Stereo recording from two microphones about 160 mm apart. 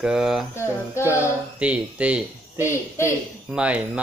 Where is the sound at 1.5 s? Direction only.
10° right (ahead or behind).